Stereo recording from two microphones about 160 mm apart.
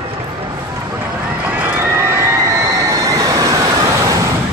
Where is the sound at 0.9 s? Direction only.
10° right (ahead or behind).